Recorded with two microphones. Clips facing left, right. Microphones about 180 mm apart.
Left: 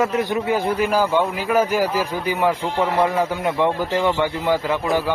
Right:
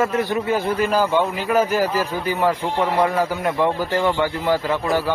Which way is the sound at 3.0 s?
20° left (ahead or behind).